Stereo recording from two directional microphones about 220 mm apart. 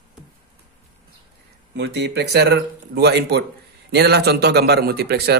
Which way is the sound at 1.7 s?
50° right (ahead or behind).